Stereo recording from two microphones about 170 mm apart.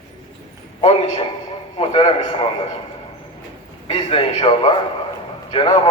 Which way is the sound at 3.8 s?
30° left (ahead or behind).